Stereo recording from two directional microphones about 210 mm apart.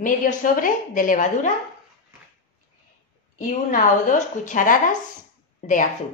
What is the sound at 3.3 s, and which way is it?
Speech, 40° left (ahead or behind).